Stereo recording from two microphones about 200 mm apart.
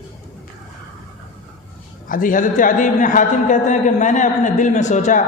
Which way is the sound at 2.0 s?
45° left (ahead or behind).